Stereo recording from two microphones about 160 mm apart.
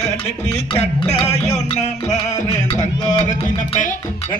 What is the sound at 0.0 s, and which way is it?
Music, 45° left (ahead or behind).